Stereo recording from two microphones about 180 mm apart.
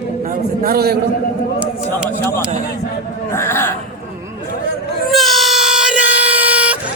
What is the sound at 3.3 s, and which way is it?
Speech, 15° left (ahead or behind).